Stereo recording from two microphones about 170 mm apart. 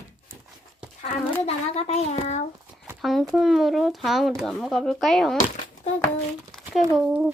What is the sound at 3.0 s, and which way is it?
Speech, centre (ahead or behind).